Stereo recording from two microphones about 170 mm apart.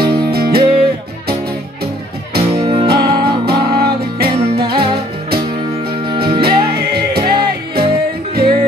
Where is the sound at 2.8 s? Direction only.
65° right (ahead or behind).